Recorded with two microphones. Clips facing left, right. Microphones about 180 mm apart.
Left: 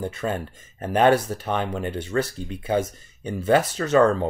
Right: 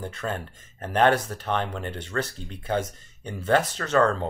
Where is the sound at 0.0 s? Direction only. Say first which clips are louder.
Left 4 dB; 10° left (ahead or behind).